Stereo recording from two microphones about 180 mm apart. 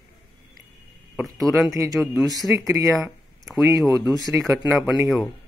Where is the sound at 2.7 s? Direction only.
15° right (ahead or behind).